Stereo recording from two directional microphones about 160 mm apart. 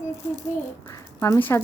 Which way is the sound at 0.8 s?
20° left (ahead or behind).